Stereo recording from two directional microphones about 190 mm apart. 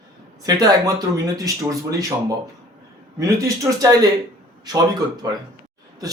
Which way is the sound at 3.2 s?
15° right (ahead or behind).